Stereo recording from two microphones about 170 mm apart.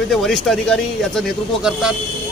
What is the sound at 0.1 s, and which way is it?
A man's voice, centre (ahead or behind).